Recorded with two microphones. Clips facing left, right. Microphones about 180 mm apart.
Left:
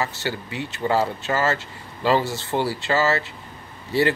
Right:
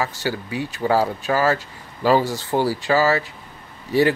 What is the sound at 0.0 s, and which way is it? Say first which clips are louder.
Speech: right 2 dB; 10° right (ahead or behind).